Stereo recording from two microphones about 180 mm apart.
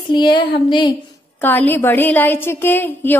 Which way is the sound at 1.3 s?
10° left (ahead or behind).